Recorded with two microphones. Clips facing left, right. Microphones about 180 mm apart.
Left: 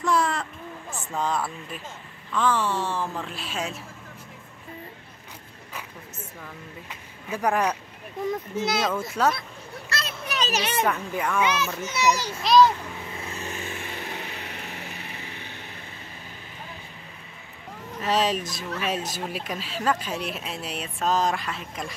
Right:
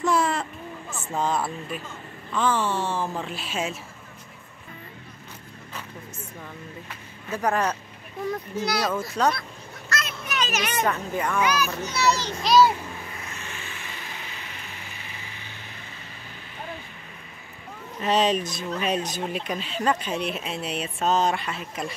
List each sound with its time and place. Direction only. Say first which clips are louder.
0.1 s vehicle: left 1 dB; 5° right (ahead or behind)
2.3 s speech: even; centre (ahead or behind)
6.9 s speech: even; 10° left (ahead or behind)
8.3 s a child's voice: left 1 dB; 20° left (ahead or behind)
9.1 s speech: even; 5° left (ahead or behind)
9.8 s children playing: right 1 dB; 30° left (ahead or behind)
10.8 s speech: right 2 dB; 5° left (ahead or behind)
11.4 s a child's voice: right 1 dB; 25° left (ahead or behind)
12.4 s speech: left 1 dB; 5° right (ahead or behind)
13.3 s vehicle: left 5 dB; 40° left (ahead or behind); by 14.5 s 60° left (ahead or behind)
18.0 s speech: right 2 dB; centre (ahead or behind)